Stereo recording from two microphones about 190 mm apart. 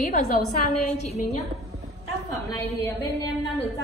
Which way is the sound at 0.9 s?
35° left (ahead or behind).